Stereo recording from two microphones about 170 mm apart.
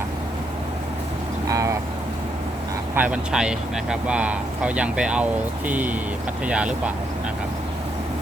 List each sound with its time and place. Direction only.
1.5 s vehicle: 20° right (ahead or behind)
2.9 s speech: 10° right (ahead or behind)